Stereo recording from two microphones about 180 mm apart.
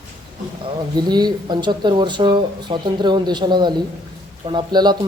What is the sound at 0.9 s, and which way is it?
Speech, 25° right (ahead or behind).